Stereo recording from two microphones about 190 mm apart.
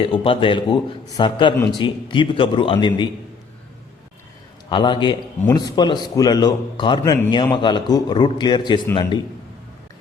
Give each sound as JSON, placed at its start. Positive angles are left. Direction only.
{"t": 0.0, "sound": "a man's voice", "side_deg": 25}
{"t": 4.7, "sound": "a man's voice", "side_deg": 25}